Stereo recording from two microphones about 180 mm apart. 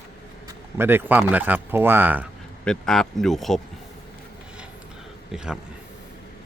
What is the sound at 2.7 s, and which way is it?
Speech, 5° left (ahead or behind).